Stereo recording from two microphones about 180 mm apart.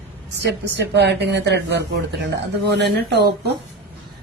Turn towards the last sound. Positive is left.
turn(degrees=-65)  # may be behind; listen again after turning